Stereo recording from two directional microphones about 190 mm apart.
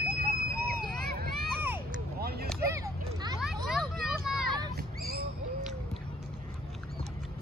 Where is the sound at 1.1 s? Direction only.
55° right (ahead or behind).